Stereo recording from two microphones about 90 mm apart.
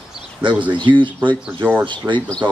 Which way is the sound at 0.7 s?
65° right (ahead or behind).